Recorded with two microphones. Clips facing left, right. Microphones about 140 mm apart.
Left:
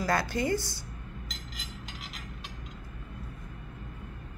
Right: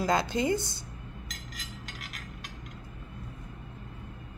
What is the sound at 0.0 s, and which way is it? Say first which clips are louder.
Speech: right 2 dB; 20° right (ahead or behind).